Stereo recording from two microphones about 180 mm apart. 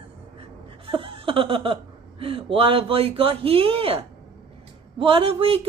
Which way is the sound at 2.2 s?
30° right (ahead or behind).